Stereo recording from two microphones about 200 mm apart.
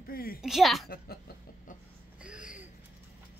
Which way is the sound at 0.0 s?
45° left (ahead or behind).